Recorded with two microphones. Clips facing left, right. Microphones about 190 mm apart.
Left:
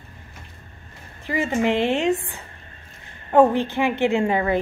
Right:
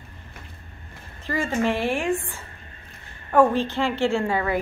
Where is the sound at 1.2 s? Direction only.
15° left (ahead or behind).